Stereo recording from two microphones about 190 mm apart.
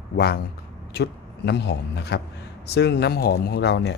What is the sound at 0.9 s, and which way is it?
A man's voice, 60° left (ahead or behind).